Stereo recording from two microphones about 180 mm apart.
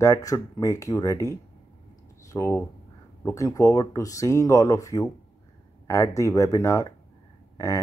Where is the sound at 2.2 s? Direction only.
15° left (ahead or behind).